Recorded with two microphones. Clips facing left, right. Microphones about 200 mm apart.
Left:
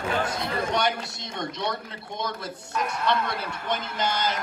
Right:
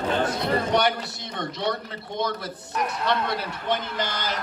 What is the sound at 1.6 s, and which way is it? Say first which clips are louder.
Speech: right 3 dB; 60° right (ahead or behind).